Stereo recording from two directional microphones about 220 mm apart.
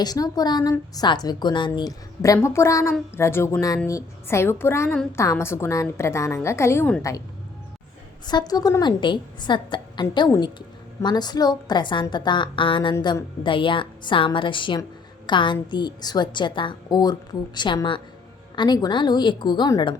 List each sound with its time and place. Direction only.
0.0 s a woman's voice: 15° left (ahead or behind)
8.3 s a woman's voice: 20° left (ahead or behind)